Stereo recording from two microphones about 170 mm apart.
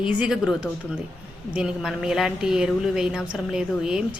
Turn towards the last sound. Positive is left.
turn(degrees=-5)  # may be behind; listen again after turning